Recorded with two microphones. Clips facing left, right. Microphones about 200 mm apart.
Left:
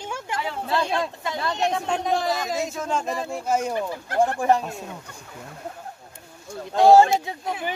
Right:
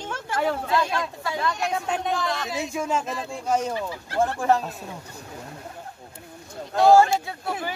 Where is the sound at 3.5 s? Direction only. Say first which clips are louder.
Even; 10° left (ahead or behind).